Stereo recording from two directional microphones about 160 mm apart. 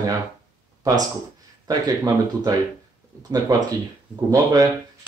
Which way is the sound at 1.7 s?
25° right (ahead or behind).